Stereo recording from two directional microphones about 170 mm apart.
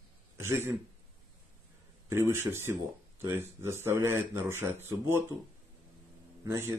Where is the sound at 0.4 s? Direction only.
15° right (ahead or behind).